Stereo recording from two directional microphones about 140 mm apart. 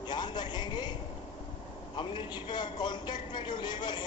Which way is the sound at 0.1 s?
30° left (ahead or behind).